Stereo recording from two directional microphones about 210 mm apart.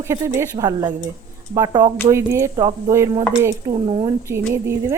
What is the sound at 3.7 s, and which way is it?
Speech, 25° right (ahead or behind).